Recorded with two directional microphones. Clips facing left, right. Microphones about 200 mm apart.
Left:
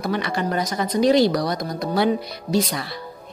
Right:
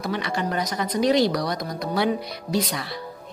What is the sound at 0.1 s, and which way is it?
Speech, 45° left (ahead or behind).